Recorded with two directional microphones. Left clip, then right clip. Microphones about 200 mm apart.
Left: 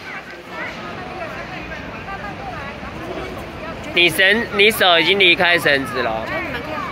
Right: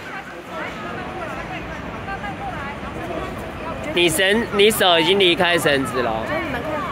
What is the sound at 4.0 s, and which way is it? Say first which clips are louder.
Speech: left 4 dB; 20° right (ahead or behind).